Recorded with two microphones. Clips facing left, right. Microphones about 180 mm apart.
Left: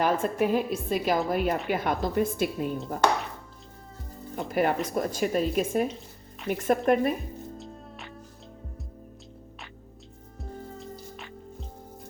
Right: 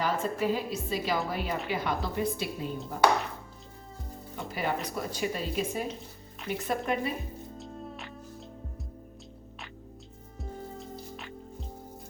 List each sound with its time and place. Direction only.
0.0 s speech: 55° left (ahead or behind)
4.4 s speech: 55° left (ahead or behind)